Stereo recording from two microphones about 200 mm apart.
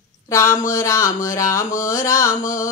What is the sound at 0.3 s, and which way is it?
Speech, 15° left (ahead or behind).